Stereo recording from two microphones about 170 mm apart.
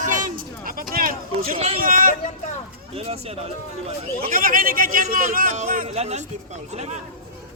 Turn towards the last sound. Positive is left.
turn(degrees=-40)  # may be behind; listen again after turning